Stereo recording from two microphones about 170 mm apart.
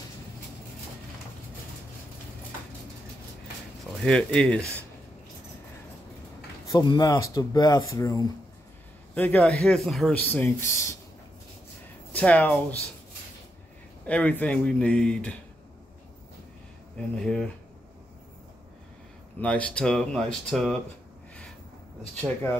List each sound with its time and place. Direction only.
4.0 s speech: 5° left (ahead or behind)
6.7 s speech: 25° left (ahead or behind)
9.1 s a man's voice: 10° left (ahead or behind)
12.1 s speech: 10° left (ahead or behind)
14.0 s a man's voice: 5° left (ahead or behind)
17.2 s speech: 5° left (ahead or behind)
19.4 s speech: 5° left (ahead or behind)
22.2 s a man's voice: 10° left (ahead or behind)